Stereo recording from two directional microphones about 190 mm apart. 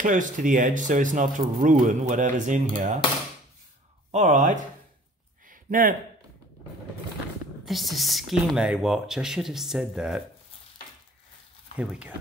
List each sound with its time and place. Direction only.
0.0 s speech: 45° right (ahead or behind)
4.1 s speech: 40° right (ahead or behind)
5.5 s a sound: 45° right (ahead or behind)
7.6 s speech: centre (ahead or behind)
11.8 s speech: 5° right (ahead or behind)